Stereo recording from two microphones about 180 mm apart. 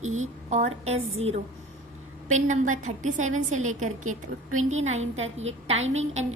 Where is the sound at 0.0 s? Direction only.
40° right (ahead or behind).